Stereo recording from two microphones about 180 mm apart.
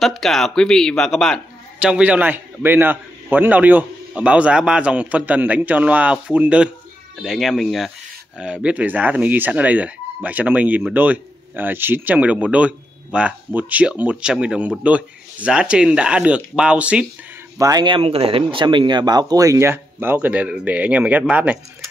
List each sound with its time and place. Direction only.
0.0 s a man's voice: centre (ahead or behind)
17.6 s speech: 20° right (ahead or behind)